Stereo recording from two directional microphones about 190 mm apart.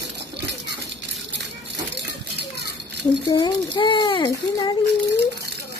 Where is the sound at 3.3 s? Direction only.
20° left (ahead or behind).